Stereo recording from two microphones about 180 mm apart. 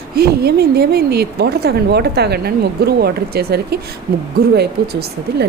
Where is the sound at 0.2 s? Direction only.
60° right (ahead or behind).